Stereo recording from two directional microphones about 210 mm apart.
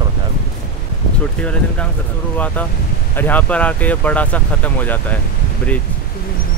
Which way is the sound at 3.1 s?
10° left (ahead or behind).